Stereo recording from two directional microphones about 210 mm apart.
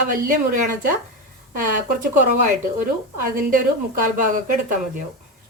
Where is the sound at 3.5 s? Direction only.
40° right (ahead or behind).